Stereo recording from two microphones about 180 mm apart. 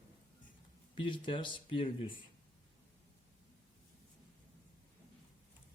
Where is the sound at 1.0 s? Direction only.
25° left (ahead or behind).